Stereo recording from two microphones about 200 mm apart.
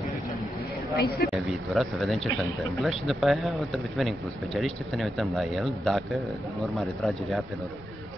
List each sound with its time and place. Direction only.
0.9 s speech: 50° left (ahead or behind)
1.3 s a man's voice: centre (ahead or behind)